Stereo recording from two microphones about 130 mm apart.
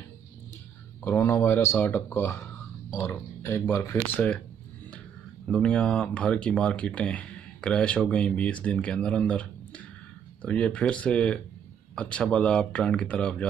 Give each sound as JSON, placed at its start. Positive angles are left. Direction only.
{"t": 1.0, "sound": "speech", "side_deg": 15}
{"t": 5.5, "sound": "speech", "side_deg": 5}